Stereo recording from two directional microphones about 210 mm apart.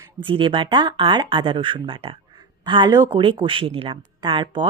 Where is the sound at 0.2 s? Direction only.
25° right (ahead or behind).